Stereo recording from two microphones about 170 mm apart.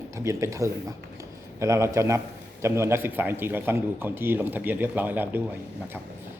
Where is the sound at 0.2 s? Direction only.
15° right (ahead or behind).